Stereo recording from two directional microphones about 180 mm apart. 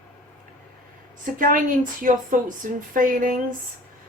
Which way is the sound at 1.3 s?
50° right (ahead or behind).